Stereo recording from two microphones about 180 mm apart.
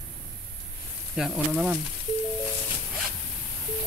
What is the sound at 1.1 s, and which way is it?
Speech, centre (ahead or behind).